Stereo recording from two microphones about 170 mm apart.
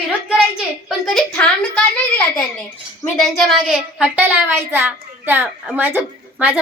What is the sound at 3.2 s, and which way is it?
A woman's voice, centre (ahead or behind).